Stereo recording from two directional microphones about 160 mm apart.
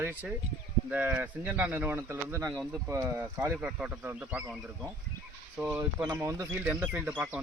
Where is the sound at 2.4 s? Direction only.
Centre (ahead or behind).